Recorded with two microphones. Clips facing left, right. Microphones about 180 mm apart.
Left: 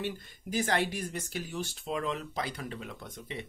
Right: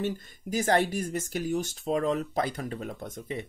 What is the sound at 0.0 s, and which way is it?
Speech, 45° right (ahead or behind).